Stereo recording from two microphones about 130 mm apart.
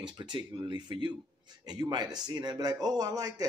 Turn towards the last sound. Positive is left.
turn(degrees=-30)  # may be behind; listen again after turning